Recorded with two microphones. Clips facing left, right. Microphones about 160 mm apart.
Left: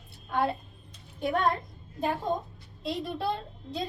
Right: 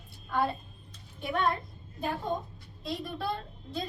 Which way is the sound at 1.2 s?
40° left (ahead or behind).